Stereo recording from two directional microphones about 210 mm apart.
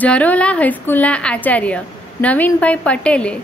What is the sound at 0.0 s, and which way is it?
A woman's voice, 5° left (ahead or behind).